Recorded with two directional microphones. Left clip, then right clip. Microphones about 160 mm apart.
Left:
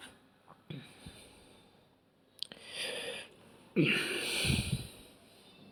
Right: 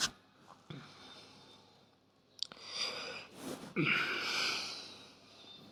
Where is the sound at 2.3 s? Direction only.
20° left (ahead or behind); by 5.1 s 5° left (ahead or behind).